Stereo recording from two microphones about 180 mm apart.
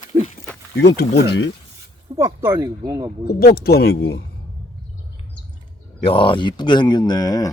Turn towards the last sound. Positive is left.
turn(degrees=20)  # may be behind; listen again after turning